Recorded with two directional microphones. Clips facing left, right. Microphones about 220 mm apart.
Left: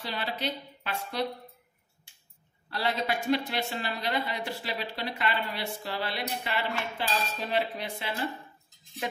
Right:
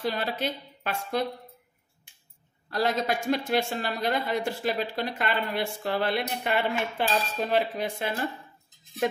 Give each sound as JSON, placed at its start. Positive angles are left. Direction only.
{"t": 0.0, "sound": "speech", "side_deg": -45}
{"t": 2.7, "sound": "speech", "side_deg": -45}